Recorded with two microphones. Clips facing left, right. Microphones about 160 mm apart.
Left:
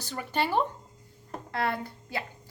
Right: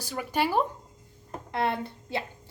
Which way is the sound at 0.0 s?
10° right (ahead or behind).